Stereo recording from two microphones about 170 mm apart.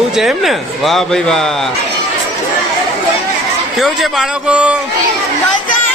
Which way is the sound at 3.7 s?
Centre (ahead or behind).